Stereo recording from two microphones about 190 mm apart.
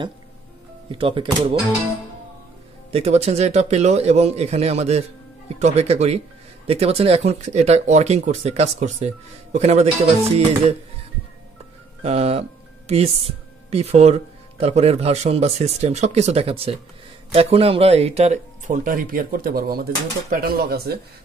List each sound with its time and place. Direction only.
0.9 s speech: 25° right (ahead or behind)
2.9 s speech: 35° right (ahead or behind)
12.0 s speech: 30° right (ahead or behind); by 21.0 s 55° right (ahead or behind)